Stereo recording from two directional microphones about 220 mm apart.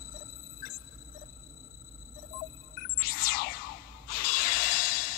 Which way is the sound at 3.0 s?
45° left (ahead or behind).